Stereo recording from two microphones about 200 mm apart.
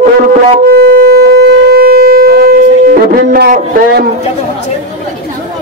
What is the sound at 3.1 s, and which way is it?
Speech, 45° right (ahead or behind).